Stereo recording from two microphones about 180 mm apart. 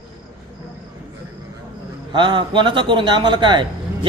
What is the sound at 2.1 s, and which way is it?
Speech, 25° right (ahead or behind).